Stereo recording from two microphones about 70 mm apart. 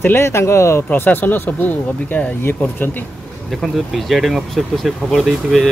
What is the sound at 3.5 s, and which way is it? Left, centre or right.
Speech, centre.